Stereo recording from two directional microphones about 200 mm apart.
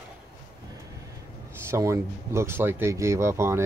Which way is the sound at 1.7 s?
15° right (ahead or behind).